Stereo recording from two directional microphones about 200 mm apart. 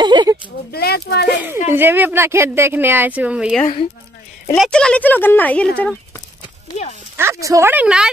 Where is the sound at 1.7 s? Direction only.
10° right (ahead or behind); by 6.2 s 5° left (ahead or behind).